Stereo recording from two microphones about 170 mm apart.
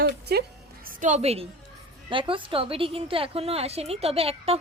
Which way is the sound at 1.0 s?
40° right (ahead or behind).